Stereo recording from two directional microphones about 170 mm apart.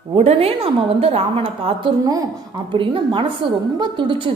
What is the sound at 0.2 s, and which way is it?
A woman's voice, 35° right (ahead or behind).